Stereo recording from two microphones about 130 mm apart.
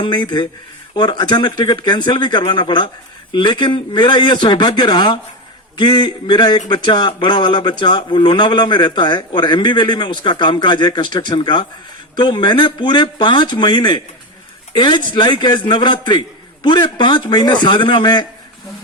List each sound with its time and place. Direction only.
0.0 s a man's voice: 35° left (ahead or behind)